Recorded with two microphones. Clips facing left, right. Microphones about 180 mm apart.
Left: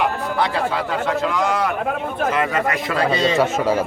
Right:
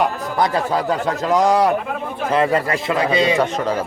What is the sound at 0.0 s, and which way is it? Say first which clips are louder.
A man's voice: right 2 dB; 40° right (ahead or behind).